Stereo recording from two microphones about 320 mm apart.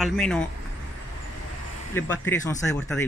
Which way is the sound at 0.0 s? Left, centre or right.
Centre.